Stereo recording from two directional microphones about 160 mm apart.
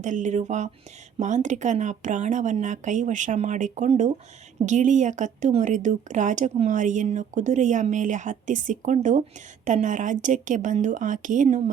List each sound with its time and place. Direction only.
0.0 s speech: 50° right (ahead or behind)